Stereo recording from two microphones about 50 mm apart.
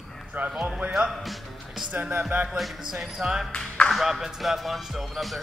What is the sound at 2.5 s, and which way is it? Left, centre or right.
Speech, centre.